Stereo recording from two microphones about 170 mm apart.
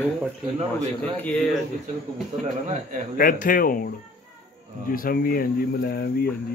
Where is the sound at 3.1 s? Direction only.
55° left (ahead or behind).